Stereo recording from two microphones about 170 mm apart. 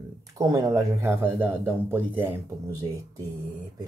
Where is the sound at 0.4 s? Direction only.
20° right (ahead or behind).